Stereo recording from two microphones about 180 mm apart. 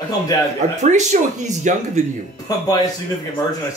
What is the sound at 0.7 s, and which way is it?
Speech, 40° right (ahead or behind).